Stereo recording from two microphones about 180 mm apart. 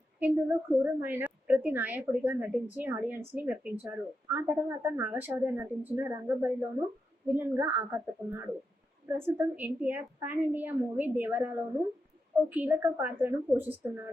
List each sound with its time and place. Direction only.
0.2 s a woman's voice: 10° right (ahead or behind)